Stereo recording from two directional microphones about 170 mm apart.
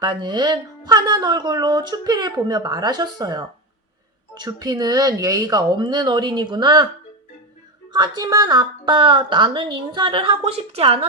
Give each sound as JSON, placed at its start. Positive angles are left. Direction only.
{"t": 0.0, "sound": "speech", "side_deg": -25}
{"t": 7.9, "sound": "speech", "side_deg": -25}